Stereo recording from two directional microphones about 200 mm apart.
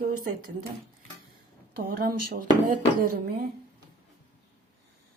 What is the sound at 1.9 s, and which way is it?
Speech, 50° right (ahead or behind).